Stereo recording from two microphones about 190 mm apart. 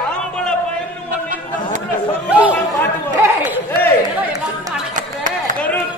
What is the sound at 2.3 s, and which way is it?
Speech, 5° right (ahead or behind).